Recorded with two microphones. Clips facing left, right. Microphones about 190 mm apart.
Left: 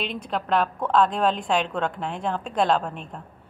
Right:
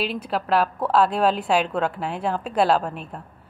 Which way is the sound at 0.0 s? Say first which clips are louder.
Right 3 dB; 5° right (ahead or behind).